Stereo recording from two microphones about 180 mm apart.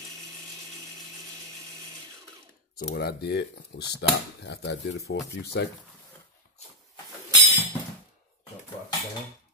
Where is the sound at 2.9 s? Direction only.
65° left (ahead or behind).